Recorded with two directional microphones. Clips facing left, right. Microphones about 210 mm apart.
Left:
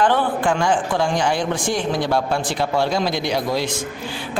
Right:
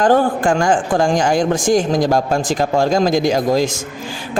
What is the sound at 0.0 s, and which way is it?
A man's voice, 45° right (ahead or behind).